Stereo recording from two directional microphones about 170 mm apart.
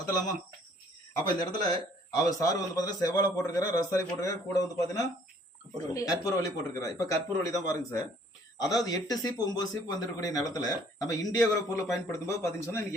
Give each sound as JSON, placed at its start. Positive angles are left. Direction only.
{"t": 1.3, "sound": "a man's voice", "side_deg": 20}